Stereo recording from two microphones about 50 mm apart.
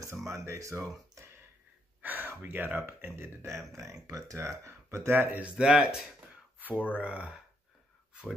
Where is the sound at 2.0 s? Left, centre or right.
Right.